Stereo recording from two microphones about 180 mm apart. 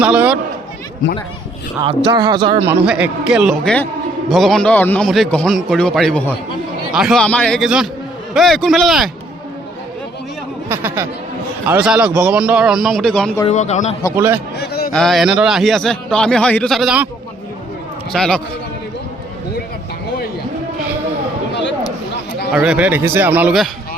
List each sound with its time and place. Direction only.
0.0 s a man's voice: 5° right (ahead or behind)
2.0 s speech: 25° right (ahead or behind)
2.6 s a man's voice: 5° right (ahead or behind)
10.7 s a man's voice: 10° right (ahead or behind); by 13.4 s 5° left (ahead or behind)
13.5 s a man's voice: 40° left (ahead or behind)
14.2 s speech: 10° right (ahead or behind)
14.6 s a sound: 60° left (ahead or behind)
14.9 s a man's voice: centre (ahead or behind)
18.1 s a man's voice: 5° left (ahead or behind)
21.5 s a sound: 85° left
22.5 s speech: 5° right (ahead or behind)